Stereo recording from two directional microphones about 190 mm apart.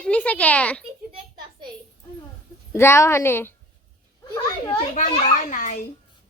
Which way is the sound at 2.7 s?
15° left (ahead or behind).